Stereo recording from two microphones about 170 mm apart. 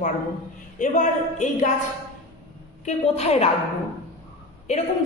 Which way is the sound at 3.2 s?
40° left (ahead or behind).